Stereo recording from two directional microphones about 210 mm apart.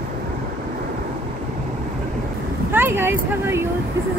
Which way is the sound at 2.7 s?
10° right (ahead or behind).